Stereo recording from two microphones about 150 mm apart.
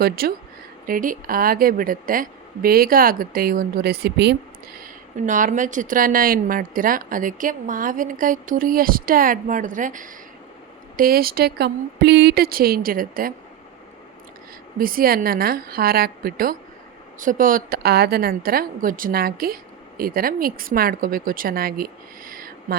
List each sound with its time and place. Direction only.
0.0 s speech: 90° right
0.9 s a woman's voice: 65° right (ahead or behind); by 4.4 s 90° right
4.8 s speech: 55° right (ahead or behind)
10.9 s a woman's voice: 75° right (ahead or behind)
14.8 s a woman's voice: 75° right (ahead or behind)
17.2 s a woman's voice: 65° right (ahead or behind); by 21.8 s 80° right
22.3 s a sound: 70° right (ahead or behind)